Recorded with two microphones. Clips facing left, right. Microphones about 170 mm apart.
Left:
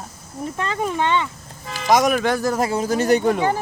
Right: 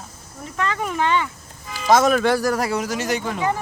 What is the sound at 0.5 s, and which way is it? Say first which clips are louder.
Speech: even; 30° left (ahead or behind).